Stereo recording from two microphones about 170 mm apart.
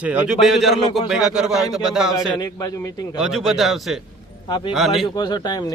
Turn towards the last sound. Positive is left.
turn(degrees=25)  # may be behind; listen again after turning